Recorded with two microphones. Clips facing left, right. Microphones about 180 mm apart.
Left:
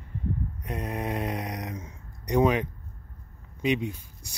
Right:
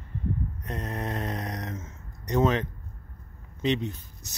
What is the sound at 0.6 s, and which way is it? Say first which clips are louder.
Speech: left 1 dB; 10° left (ahead or behind).